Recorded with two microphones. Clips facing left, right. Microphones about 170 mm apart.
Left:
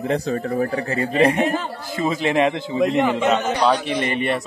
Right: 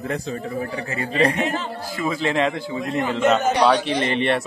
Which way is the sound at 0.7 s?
35° left (ahead or behind).